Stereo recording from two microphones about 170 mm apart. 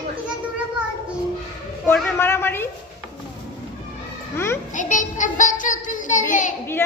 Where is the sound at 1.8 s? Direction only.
15° left (ahead or behind).